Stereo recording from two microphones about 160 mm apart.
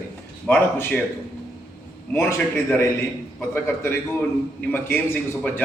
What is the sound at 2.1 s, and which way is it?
A man's voice, 15° left (ahead or behind).